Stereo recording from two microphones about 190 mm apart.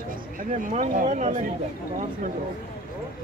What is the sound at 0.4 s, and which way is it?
Speech, 45° right (ahead or behind).